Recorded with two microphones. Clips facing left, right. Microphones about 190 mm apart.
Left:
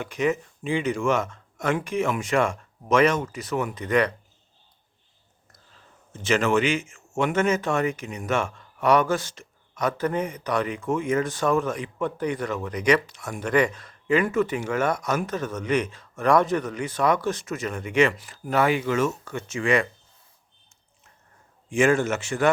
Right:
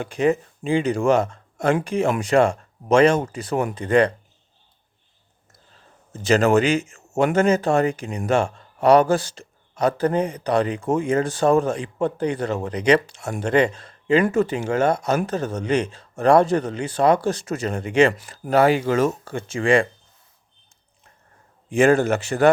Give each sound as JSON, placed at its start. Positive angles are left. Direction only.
{"t": 0.0, "sound": "speech", "side_deg": -30}
{"t": 6.2, "sound": "speech", "side_deg": -40}
{"t": 18.2, "sound": "speech", "side_deg": -40}
{"t": 21.7, "sound": "speech", "side_deg": -35}